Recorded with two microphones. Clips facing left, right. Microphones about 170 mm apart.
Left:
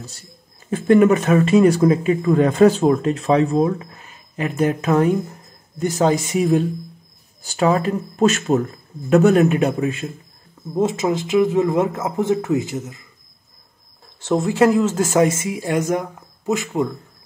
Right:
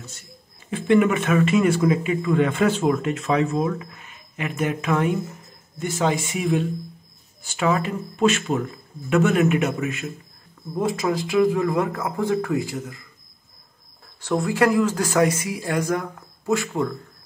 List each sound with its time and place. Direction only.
0.7 s speech: 40° left (ahead or behind); by 13.0 s 20° left (ahead or behind)
14.2 s speech: 25° left (ahead or behind)